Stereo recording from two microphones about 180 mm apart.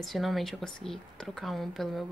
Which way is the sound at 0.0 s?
Centre (ahead or behind).